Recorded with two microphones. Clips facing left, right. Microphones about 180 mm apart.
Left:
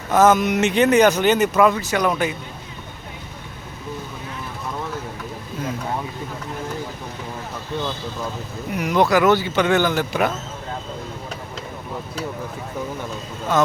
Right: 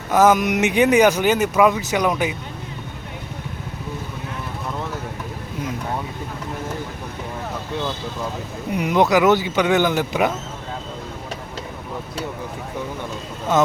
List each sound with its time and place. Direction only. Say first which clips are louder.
0.1 s speech: even; 10° right (ahead or behind)
8.7 s speech: right 1 dB; 20° right (ahead or behind)